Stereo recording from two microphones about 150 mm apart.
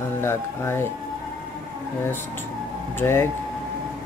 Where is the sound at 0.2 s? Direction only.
15° left (ahead or behind).